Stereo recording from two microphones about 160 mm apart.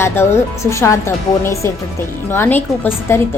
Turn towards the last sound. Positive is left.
turn(degrees=15)  # may be behind; listen again after turning